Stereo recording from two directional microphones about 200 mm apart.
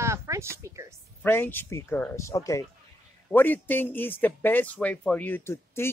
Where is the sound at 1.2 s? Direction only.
10° left (ahead or behind).